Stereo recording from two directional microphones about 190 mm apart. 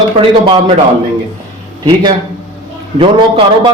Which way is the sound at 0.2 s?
25° right (ahead or behind).